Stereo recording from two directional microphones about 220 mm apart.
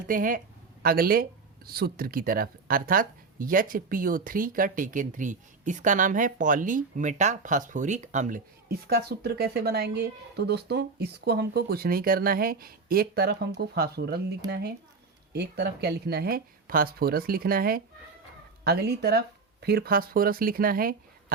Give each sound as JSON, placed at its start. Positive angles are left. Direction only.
{"t": 0.1, "sound": "speech", "side_deg": -40}